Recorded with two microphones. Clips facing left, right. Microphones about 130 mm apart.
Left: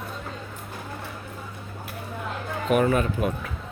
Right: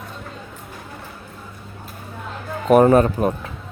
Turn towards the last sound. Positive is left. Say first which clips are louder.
# right 8 dB
turn(degrees=-40)  # may be behind; listen again after turning